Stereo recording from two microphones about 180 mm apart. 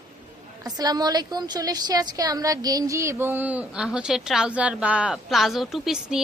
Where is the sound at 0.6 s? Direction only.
20° right (ahead or behind).